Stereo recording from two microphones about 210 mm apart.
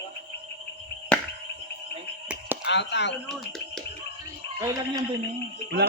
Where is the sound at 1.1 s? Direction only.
5° left (ahead or behind).